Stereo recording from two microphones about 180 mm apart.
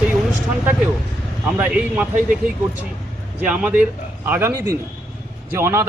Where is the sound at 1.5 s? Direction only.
10° right (ahead or behind).